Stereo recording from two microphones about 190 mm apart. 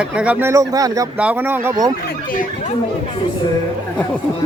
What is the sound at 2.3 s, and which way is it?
Speech, 45° left (ahead or behind).